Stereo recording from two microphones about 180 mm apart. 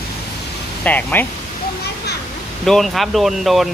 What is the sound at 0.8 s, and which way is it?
Speech, 10° left (ahead or behind).